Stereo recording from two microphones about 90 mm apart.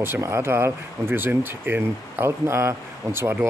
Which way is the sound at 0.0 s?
30° right (ahead or behind).